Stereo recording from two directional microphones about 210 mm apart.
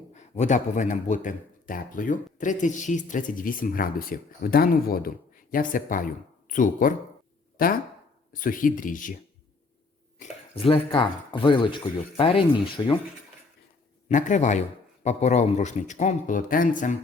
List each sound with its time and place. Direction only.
0.1 s a man's voice: 35° left (ahead or behind)
7.5 s a sound: 45° left (ahead or behind)
8.3 s a man's voice: 40° left (ahead or behind)
10.5 s speech: 25° left (ahead or behind)
14.1 s a man's voice: 35° left (ahead or behind)